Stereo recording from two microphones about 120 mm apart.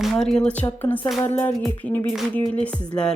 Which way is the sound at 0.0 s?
5° left (ahead or behind).